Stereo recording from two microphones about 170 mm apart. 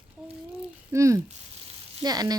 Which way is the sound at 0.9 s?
15° right (ahead or behind).